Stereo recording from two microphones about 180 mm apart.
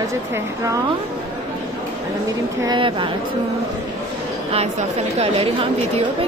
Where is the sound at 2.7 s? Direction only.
30° right (ahead or behind).